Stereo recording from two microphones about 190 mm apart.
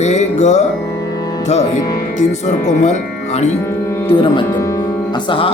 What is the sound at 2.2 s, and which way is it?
Music, 40° left (ahead or behind).